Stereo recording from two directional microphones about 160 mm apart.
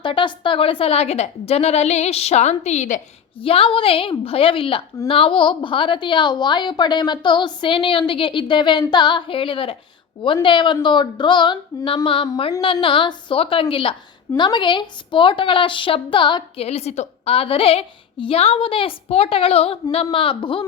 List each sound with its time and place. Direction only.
0.0 s a woman's voice: 30° left (ahead or behind); by 3.0 s 45° left (ahead or behind)
3.3 s a woman's voice: 35° left (ahead or behind)